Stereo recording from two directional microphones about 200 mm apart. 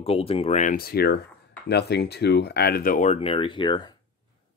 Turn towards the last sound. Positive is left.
turn(degrees=25)  # may be behind; listen again after turning